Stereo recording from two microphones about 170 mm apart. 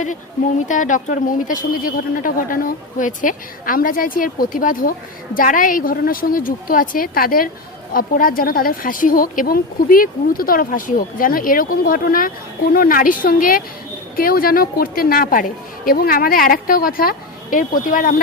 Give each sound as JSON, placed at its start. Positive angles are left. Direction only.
{"t": 0.7, "sound": "a woman's voice", "side_deg": 50}